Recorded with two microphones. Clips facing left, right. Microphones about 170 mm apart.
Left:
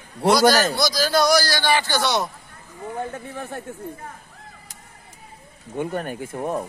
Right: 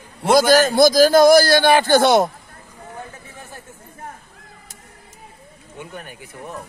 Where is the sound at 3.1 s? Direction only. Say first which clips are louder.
Left 8 dB; 60° left (ahead or behind).